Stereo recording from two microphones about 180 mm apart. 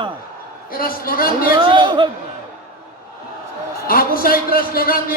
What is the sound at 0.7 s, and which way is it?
Speech, 55° left (ahead or behind).